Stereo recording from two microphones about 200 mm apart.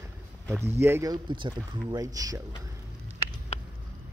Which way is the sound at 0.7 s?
10° right (ahead or behind).